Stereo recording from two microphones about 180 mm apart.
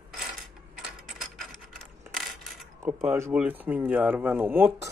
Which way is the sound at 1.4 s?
Centre (ahead or behind).